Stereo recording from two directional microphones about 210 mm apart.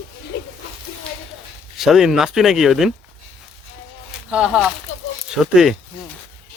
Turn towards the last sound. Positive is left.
turn(degrees=0)  # may be behind; listen again after turning